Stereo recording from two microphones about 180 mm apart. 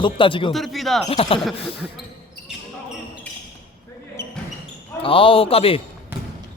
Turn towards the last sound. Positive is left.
turn(degrees=30)  # may be behind; listen again after turning